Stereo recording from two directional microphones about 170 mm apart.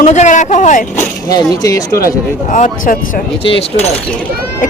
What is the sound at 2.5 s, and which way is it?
Speech, 50° left (ahead or behind).